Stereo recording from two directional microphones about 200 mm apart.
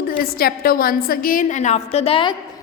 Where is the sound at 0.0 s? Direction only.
50° left (ahead or behind).